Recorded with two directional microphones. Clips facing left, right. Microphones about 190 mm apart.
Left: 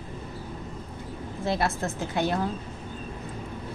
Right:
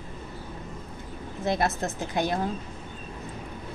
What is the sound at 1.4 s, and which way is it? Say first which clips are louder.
Speech: right 1 dB; 20° right (ahead or behind).